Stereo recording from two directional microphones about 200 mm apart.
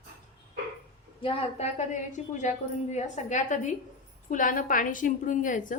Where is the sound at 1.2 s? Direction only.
30° left (ahead or behind).